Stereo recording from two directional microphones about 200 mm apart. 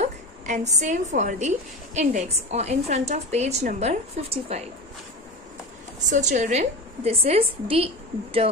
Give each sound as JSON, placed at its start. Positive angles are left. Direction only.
{"t": 0.0, "sound": "a woman's voice", "side_deg": -35}
{"t": 6.0, "sound": "a woman's voice", "side_deg": -35}